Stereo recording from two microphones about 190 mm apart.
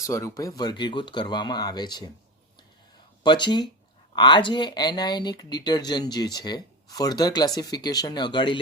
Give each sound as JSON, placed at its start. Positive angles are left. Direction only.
{"t": 0.0, "sound": "speech", "side_deg": 15}
{"t": 3.2, "sound": "speech", "side_deg": 25}